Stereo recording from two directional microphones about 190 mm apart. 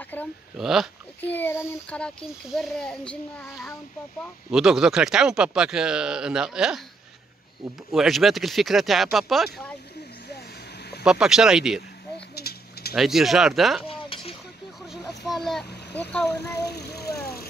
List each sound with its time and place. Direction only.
0.1 s a sound: 10° left (ahead or behind)
0.6 s a child's voice: centre (ahead or behind)
1.2 s a child's voice: 10° left (ahead or behind)
7.9 s a child's voice: centre (ahead or behind)
11.1 s a child's voice: 5° right (ahead or behind)
12.4 s a sound: 55° left (ahead or behind)
12.9 s a child's voice: centre (ahead or behind)
13.8 s a sound: 30° left (ahead or behind)
15.2 s a child's voice: centre (ahead or behind)
16.6 s vehicle: 60° left (ahead or behind)